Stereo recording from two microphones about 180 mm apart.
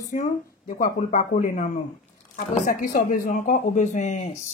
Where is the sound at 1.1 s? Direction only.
50° left (ahead or behind).